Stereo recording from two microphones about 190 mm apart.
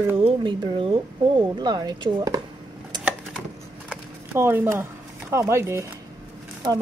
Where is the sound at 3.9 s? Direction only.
10° right (ahead or behind).